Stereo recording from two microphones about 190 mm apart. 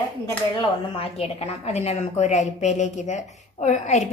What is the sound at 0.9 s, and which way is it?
A woman's voice, 30° left (ahead or behind).